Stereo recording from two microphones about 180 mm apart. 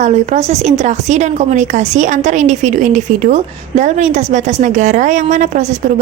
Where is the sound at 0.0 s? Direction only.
35° right (ahead or behind).